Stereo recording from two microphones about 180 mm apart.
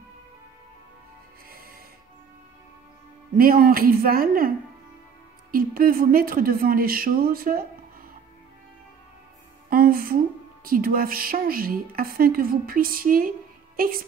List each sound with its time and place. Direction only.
3.3 s a woman's voice: 55° right (ahead or behind)
5.5 s a woman's voice: 55° right (ahead or behind)
9.7 s a woman's voice: 55° right (ahead or behind)